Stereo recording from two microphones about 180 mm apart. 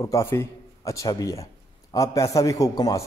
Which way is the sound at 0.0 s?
15° left (ahead or behind).